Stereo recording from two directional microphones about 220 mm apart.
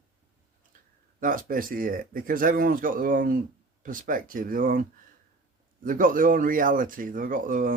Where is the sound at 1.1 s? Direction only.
40° right (ahead or behind).